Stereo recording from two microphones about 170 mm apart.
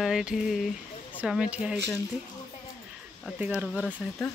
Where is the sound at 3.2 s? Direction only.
5° right (ahead or behind).